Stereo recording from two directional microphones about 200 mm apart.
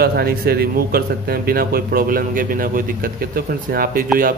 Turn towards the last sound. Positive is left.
turn(degrees=-45)  # may be behind; listen again after turning